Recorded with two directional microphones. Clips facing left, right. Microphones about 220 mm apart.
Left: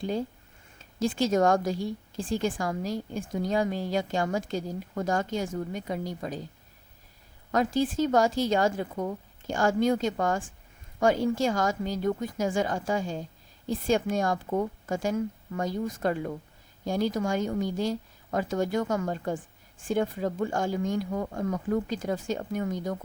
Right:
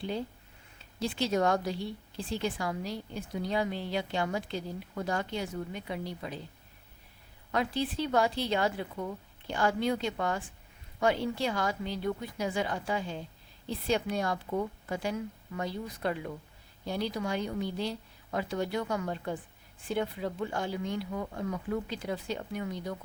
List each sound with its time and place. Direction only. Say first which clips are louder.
0.0 s a woman's voice: left 5 dB; 45° left (ahead or behind)
7.5 s a woman's voice: left 6 dB; 45° left (ahead or behind)